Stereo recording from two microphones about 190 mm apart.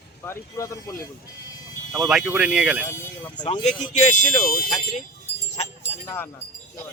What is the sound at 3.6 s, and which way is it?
Speech, 40° left (ahead or behind).